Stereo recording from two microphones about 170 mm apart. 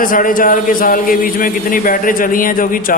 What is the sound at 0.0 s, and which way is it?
A man's voice, 55° left (ahead or behind).